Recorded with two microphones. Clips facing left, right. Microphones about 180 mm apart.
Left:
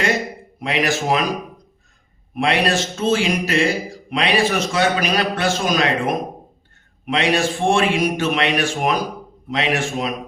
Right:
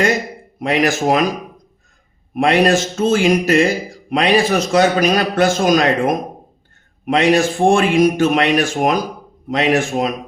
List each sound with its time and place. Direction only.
0.6 s a man's voice: 45° right (ahead or behind)
2.3 s a man's voice: 45° right (ahead or behind)